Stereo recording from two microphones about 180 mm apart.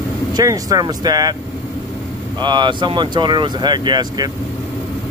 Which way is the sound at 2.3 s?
25° right (ahead or behind).